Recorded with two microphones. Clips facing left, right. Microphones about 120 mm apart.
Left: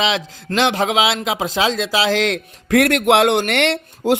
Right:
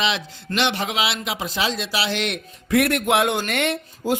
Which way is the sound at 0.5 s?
90° left.